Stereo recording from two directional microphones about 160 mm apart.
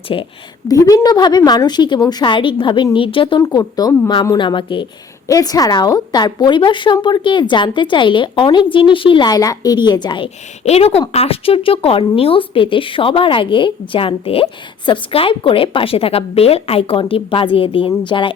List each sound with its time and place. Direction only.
0.1 s a woman's voice: 30° left (ahead or behind)
10.6 s a woman's voice: 40° left (ahead or behind)